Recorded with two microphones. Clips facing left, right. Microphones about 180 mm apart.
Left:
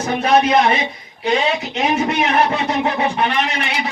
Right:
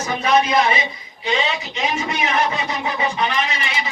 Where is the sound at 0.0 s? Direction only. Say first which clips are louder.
Left 3 dB; 60° left (ahead or behind).